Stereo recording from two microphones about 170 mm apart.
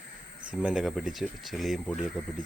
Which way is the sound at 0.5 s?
5° right (ahead or behind).